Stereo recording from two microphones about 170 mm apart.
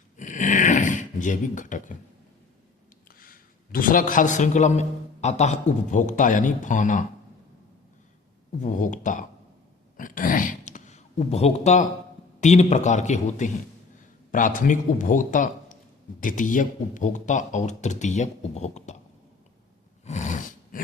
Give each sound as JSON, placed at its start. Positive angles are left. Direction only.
{"t": 0.2, "sound": "a sound", "side_deg": 50}
{"t": 3.2, "sound": "a man's voice", "side_deg": 55}
{"t": 8.6, "sound": "a man's voice", "side_deg": 50}
{"t": 20.1, "sound": "roar", "side_deg": 45}